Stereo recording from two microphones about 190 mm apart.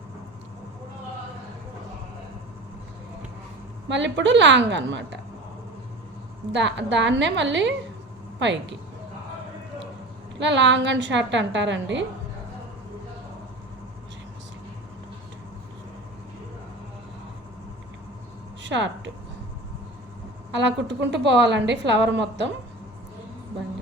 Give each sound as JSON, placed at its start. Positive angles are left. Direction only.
{"t": 3.8, "sound": "a woman's voice", "side_deg": -70}
{"t": 6.5, "sound": "a woman's voice", "side_deg": -70}
{"t": 10.3, "sound": "a woman's voice", "side_deg": -70}
{"t": 18.6, "sound": "speech", "side_deg": -75}
{"t": 20.5, "sound": "a woman's voice", "side_deg": -70}